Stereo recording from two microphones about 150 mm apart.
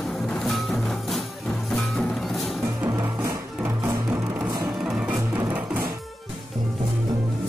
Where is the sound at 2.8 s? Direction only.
20° right (ahead or behind).